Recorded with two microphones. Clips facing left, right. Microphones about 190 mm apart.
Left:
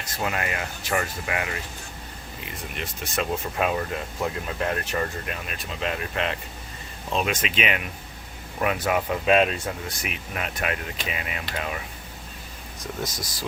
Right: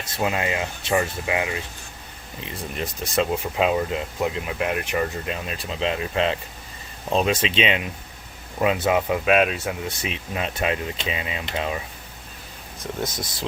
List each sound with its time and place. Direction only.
0.2 s speech: 20° right (ahead or behind)
2.4 s speech: 30° right (ahead or behind)
3.6 s speech: 20° right (ahead or behind)
9.2 s speech: 5° right (ahead or behind)
9.9 s speech: 25° right (ahead or behind)
13.0 s speech: 25° right (ahead or behind)